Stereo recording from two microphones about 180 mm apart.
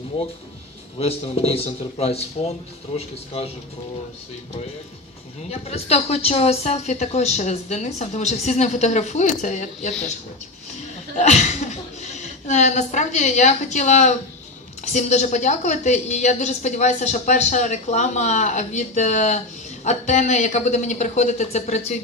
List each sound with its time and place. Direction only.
0.9 s a woman's voice: 35° left (ahead or behind)
5.5 s a woman's voice: 35° left (ahead or behind)
11.1 s a woman's voice: 40° left (ahead or behind)